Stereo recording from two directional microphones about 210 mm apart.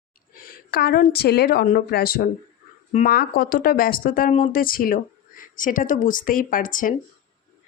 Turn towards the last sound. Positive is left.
turn(degrees=40)  # may be behind; listen again after turning